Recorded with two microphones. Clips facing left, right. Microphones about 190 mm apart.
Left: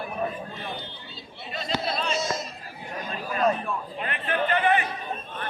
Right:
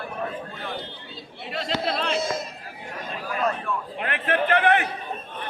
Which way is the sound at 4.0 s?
75° right (ahead or behind).